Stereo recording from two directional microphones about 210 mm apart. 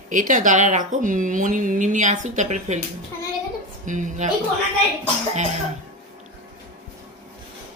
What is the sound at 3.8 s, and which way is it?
Speech, 35° right (ahead or behind).